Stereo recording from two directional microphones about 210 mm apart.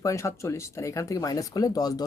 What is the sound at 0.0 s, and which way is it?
Speech, 15° left (ahead or behind).